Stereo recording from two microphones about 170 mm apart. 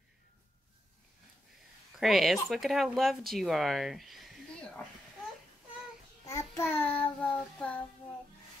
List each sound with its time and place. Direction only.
2.0 s speech: centre (ahead or behind)
6.2 s child singing: 20° left (ahead or behind)